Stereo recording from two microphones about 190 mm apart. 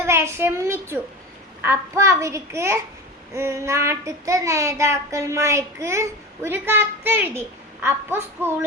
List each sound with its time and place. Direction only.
0.0 s a woman's voice: 15° right (ahead or behind)
1.6 s child singing: 15° right (ahead or behind)